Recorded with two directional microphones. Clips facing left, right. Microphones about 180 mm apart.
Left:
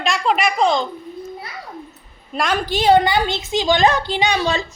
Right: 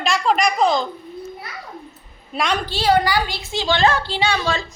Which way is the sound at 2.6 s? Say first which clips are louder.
Left 5 dB; 20° left (ahead or behind).